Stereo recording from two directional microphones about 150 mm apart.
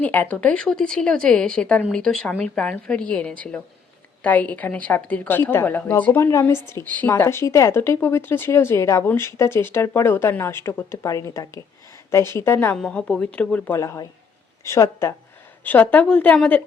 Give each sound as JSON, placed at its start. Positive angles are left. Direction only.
{"t": 0.0, "sound": "a woman's voice", "side_deg": 10}
{"t": 13.7, "sound": "a woman's voice", "side_deg": 20}